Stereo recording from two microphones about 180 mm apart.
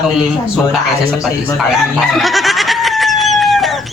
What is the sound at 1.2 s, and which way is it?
Chicken, centre (ahead or behind).